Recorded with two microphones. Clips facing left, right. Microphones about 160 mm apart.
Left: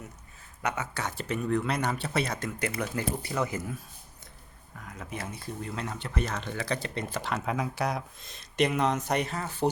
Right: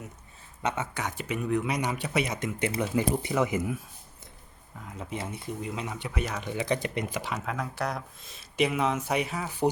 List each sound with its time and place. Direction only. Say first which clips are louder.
0.6 s speech: right 1 dB; 20° right (ahead or behind)
4.8 s speech: right 3 dB; 25° right (ahead or behind)
7.4 s speech: left 2 dB; 5° left (ahead or behind)